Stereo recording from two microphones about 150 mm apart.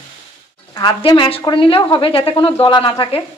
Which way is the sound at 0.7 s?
30° left (ahead or behind).